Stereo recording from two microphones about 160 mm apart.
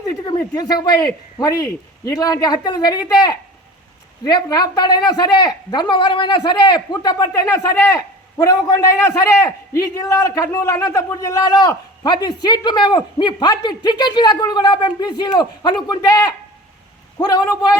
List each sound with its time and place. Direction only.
0.1 s a man's voice: 20° left (ahead or behind)